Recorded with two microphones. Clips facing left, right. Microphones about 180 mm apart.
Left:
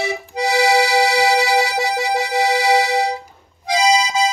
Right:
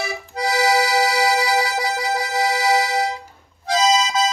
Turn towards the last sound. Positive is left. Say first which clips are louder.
# left 1 dB
turn(degrees=10)  # may be behind; listen again after turning